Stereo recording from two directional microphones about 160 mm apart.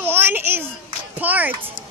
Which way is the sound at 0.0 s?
15° right (ahead or behind).